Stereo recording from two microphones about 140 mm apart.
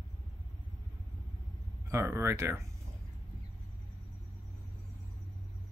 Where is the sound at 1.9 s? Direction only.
15° right (ahead or behind).